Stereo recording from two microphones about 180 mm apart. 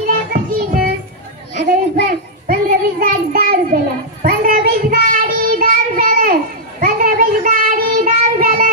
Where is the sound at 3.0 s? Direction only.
55° right (ahead or behind).